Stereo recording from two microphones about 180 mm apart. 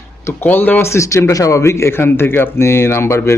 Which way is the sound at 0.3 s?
10° left (ahead or behind).